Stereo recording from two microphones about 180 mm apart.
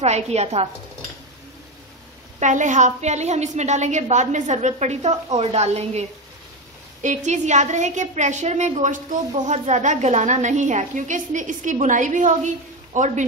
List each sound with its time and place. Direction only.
0.0 s a woman's voice: 40° right (ahead or behind)
2.4 s a woman's voice: 45° right (ahead or behind)